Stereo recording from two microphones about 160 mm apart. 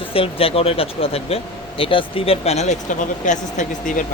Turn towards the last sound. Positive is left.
turn(degrees=55)  # may be behind; listen again after turning